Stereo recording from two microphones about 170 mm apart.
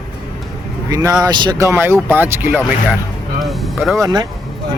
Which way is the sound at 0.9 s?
20° right (ahead or behind).